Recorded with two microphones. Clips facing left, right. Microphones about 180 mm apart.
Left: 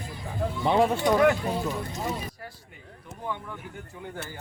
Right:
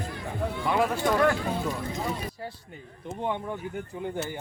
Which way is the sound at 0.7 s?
30° left (ahead or behind).